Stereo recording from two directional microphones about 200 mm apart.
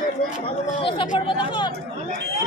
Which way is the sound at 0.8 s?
25° left (ahead or behind).